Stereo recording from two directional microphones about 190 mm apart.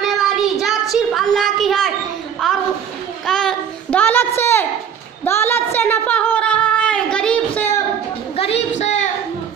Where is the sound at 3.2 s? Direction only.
5° left (ahead or behind).